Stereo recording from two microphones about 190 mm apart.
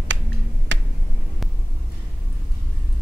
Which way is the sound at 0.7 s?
75° right (ahead or behind).